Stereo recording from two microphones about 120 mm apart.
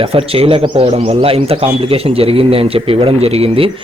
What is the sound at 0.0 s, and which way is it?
Speech, 50° right (ahead or behind).